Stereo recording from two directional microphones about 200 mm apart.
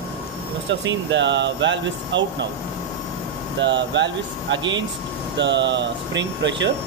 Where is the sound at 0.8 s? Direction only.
65° right (ahead or behind).